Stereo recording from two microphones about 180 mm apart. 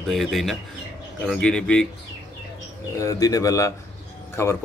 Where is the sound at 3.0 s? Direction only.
20° left (ahead or behind).